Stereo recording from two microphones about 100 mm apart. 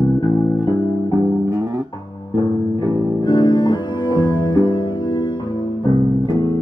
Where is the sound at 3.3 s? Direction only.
45° left (ahead or behind).